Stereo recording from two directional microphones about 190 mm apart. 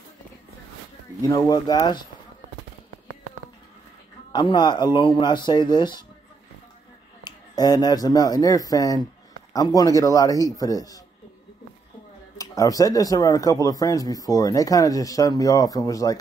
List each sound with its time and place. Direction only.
1.5 s a man's voice: 20° left (ahead or behind)
4.3 s a man's voice: 25° left (ahead or behind)
7.2 s a man's voice: 20° left (ahead or behind)
12.4 s a man's voice: 20° left (ahead or behind)